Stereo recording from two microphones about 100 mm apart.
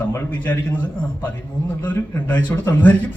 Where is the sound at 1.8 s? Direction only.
20° left (ahead or behind).